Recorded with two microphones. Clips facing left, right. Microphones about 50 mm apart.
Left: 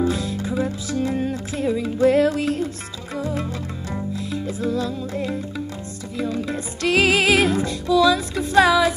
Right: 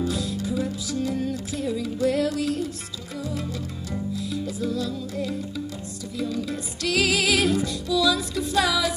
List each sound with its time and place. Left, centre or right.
0.0 s music: left